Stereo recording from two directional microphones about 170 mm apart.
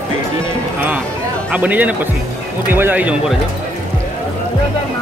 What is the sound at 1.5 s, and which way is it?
Speech, 10° right (ahead or behind).